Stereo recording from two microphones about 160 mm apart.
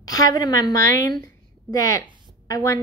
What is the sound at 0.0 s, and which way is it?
A woman's voice, 25° left (ahead or behind).